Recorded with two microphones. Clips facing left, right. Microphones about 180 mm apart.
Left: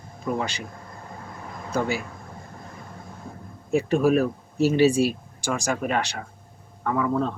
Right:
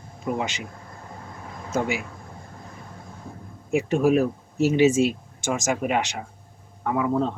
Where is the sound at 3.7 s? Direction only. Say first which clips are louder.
Even; 15° right (ahead or behind).